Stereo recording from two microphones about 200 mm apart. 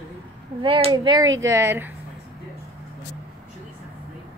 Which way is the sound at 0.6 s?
30° right (ahead or behind).